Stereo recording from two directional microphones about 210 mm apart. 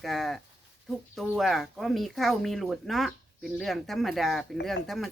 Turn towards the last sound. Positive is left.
turn(degrees=0)  # may be behind; listen again after turning